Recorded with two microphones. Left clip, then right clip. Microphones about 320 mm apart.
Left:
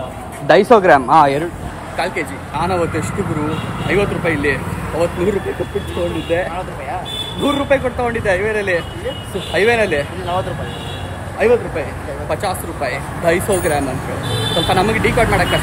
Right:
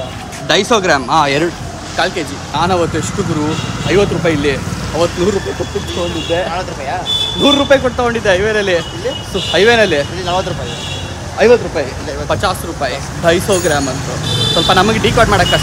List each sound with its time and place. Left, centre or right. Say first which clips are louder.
0.5 s speech: left 2 dB; centre
2.0 s speech: right 4 dB; centre
3.9 s speech: right 4 dB; centre
6.3 s speech: right 4 dB; centre
11.3 s speech: right 5 dB; centre